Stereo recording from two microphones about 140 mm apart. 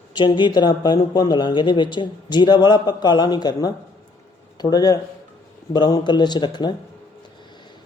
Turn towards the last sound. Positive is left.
turn(degrees=30)  # may be behind; listen again after turning